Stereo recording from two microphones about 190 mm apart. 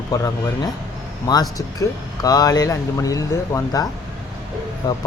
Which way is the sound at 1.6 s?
20° left (ahead or behind).